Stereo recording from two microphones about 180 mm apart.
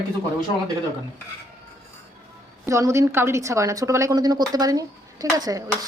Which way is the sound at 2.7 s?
15° right (ahead or behind).